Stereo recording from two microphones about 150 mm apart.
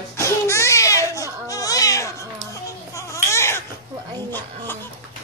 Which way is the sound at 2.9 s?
20° left (ahead or behind).